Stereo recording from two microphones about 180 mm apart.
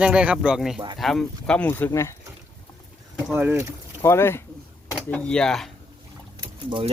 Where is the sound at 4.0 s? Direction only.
15° left (ahead or behind).